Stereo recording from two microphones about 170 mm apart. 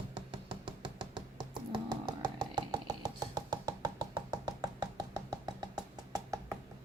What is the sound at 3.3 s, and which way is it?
Music, 25° right (ahead or behind).